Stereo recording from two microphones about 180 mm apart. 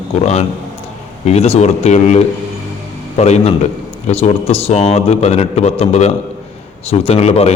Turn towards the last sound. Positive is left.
turn(degrees=35)  # may be behind; listen again after turning